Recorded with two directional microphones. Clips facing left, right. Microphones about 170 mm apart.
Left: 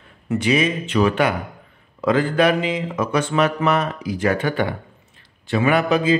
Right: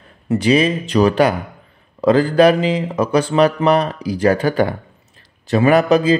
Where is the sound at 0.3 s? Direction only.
35° right (ahead or behind).